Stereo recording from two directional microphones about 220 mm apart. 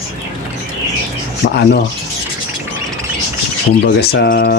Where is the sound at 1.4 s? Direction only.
50° left (ahead or behind).